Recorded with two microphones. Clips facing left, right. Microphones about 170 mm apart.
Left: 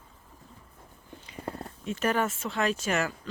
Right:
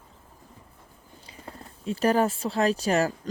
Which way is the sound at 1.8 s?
35° right (ahead or behind).